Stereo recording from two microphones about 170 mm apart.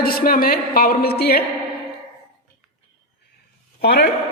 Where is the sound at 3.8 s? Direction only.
70° left (ahead or behind).